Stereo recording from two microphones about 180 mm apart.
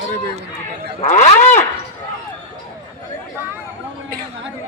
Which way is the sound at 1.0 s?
40° left (ahead or behind).